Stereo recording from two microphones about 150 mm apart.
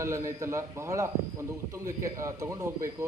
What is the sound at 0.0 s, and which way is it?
Speech, 20° right (ahead or behind).